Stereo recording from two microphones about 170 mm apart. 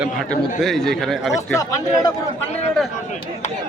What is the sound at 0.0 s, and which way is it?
A man's voice, centre (ahead or behind).